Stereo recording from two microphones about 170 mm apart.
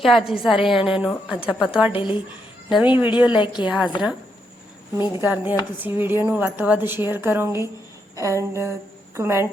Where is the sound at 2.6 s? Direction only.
5° right (ahead or behind).